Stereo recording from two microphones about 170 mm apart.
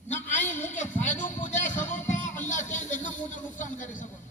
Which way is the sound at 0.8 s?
45° left (ahead or behind).